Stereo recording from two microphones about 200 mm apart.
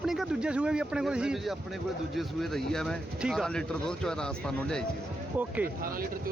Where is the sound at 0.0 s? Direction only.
Centre (ahead or behind).